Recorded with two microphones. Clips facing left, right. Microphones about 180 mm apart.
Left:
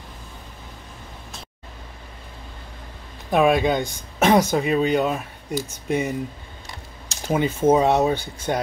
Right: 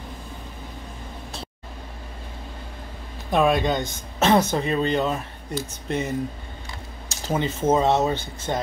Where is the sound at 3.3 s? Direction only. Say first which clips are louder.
Left 2 dB; 5° left (ahead or behind).